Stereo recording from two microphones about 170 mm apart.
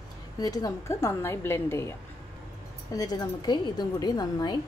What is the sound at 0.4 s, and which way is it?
A woman's voice, 20° left (ahead or behind).